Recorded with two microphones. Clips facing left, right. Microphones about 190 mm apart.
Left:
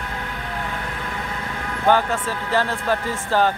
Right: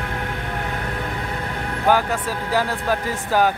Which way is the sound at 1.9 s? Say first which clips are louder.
Even; 10° right (ahead or behind).